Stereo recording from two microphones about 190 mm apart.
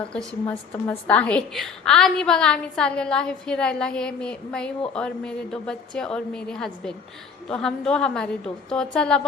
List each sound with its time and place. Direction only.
0.4 s a woman's voice: 10° left (ahead or behind)